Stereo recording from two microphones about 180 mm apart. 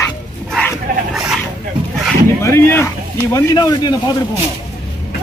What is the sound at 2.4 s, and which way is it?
A man's voice, 15° left (ahead or behind).